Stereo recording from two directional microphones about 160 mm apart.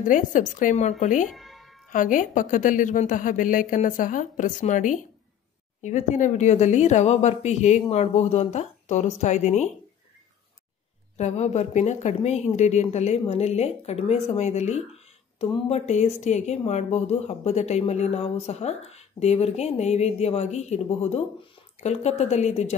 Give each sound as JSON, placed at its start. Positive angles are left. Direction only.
{"t": 0.0, "sound": "a woman's voice", "side_deg": 55}
{"t": 1.3, "sound": "music", "side_deg": 0}
{"t": 1.9, "sound": "a woman's voice", "side_deg": 55}
{"t": 11.1, "sound": "a woman's voice", "side_deg": 45}